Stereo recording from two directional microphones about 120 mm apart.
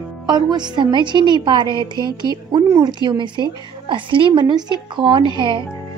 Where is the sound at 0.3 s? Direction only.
35° right (ahead or behind).